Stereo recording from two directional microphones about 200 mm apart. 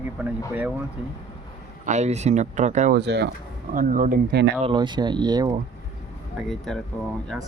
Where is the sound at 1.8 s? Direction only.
35° right (ahead or behind).